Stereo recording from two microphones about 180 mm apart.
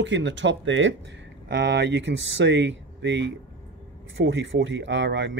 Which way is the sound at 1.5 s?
75° right (ahead or behind).